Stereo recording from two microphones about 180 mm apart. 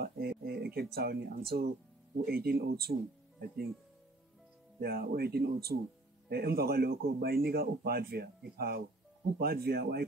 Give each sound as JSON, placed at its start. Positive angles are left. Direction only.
{"t": 0.0, "sound": "speech", "side_deg": -60}
{"t": 4.7, "sound": "speech", "side_deg": -60}